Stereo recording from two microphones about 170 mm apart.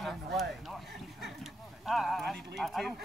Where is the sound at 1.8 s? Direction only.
Centre (ahead or behind).